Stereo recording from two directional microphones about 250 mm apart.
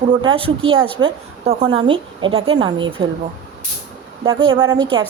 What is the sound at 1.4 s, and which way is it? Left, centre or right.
A woman's voice, right.